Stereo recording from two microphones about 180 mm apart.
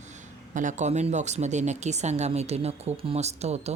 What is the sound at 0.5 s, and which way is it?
Speech, 45° right (ahead or behind).